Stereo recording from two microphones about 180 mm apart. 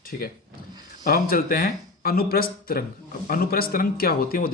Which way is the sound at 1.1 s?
55° left (ahead or behind).